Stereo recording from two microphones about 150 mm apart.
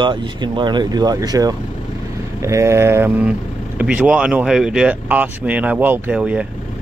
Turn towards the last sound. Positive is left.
turn(degrees=-10)  # may be behind; listen again after turning